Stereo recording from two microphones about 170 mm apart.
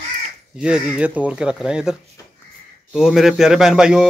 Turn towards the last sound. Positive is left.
turn(degrees=-5)  # may be behind; listen again after turning